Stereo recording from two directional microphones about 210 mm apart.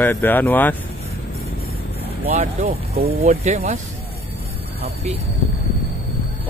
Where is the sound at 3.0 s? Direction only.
30° right (ahead or behind).